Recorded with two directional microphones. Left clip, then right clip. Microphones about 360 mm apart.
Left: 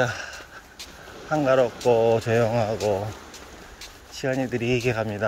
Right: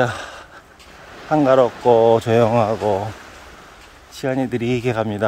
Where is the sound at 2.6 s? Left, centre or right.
Right.